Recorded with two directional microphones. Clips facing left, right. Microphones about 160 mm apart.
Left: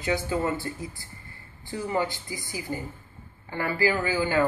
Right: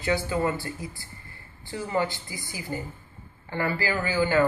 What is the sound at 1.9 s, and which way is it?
Speech, 15° left (ahead or behind).